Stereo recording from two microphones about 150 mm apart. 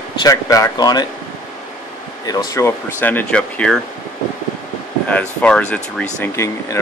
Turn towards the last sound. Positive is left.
turn(degrees=20)  # may be behind; listen again after turning